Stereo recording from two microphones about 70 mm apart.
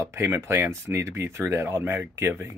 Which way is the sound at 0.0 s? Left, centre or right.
Right.